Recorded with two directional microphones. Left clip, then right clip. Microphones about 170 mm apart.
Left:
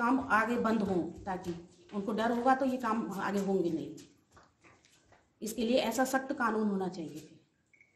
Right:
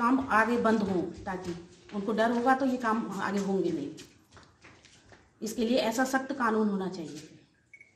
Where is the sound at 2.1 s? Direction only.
25° left (ahead or behind).